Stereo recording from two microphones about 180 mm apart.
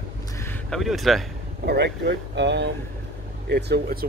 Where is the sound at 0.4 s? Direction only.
10° left (ahead or behind).